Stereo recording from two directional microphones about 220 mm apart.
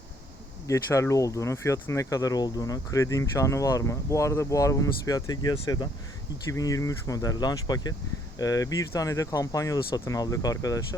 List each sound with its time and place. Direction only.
0.7 s speech: 15° left (ahead or behind)